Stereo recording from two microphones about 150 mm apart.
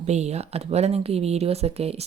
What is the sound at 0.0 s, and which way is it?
Speech, 45° right (ahead or behind).